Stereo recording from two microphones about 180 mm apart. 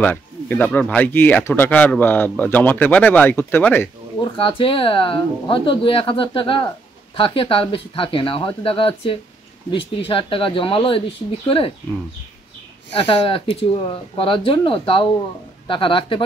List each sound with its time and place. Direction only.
0.0 s speech: 10° left (ahead or behind)
4.2 s speech: 30° left (ahead or behind)
12.9 s speech: 30° left (ahead or behind)